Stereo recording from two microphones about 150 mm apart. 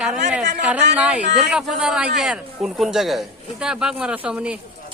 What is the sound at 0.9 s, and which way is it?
A man's voice, 10° right (ahead or behind).